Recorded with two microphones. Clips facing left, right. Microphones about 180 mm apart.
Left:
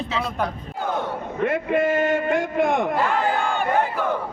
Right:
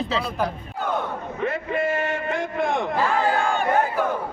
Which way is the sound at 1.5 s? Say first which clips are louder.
Left 4 dB; 50° left (ahead or behind).